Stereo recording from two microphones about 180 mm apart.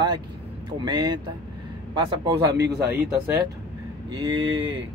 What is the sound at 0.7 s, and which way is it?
Speech, 25° right (ahead or behind).